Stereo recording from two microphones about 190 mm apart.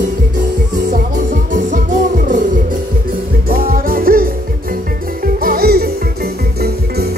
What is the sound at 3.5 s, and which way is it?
Music, 50° right (ahead or behind).